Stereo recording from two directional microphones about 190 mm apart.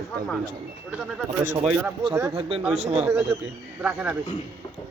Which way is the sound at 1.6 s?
5° right (ahead or behind).